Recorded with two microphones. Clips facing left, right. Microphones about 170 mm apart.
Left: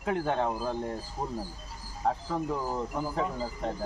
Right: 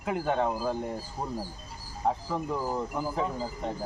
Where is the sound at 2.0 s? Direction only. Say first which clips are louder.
Even; 5° right (ahead or behind).